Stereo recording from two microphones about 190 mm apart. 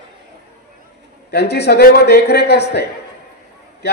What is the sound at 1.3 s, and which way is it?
A man's voice, 60° left (ahead or behind).